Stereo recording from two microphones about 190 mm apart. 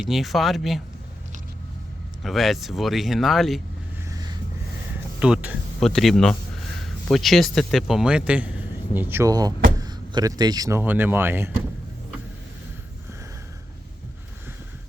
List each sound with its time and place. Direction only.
0.0 s speech: centre (ahead or behind)
2.2 s speech: centre (ahead or behind)
4.1 s a sound: 20° right (ahead or behind)
4.9 s speech: 5° right (ahead or behind)